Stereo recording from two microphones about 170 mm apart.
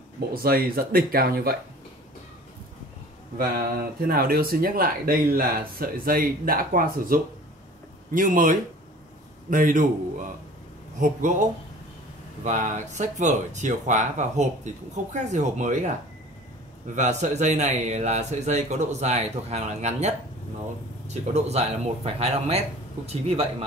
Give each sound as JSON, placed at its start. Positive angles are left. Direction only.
{"t": 0.3, "sound": "speech", "side_deg": -60}
{"t": 4.1, "sound": "speech", "side_deg": -60}
{"t": 11.0, "sound": "speech", "side_deg": -50}
{"t": 12.4, "sound": "speech", "side_deg": -45}
{"t": 16.9, "sound": "speech", "side_deg": -45}